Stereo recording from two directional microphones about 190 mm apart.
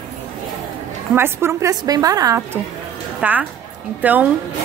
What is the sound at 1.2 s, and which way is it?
A woman's voice, 15° right (ahead or behind).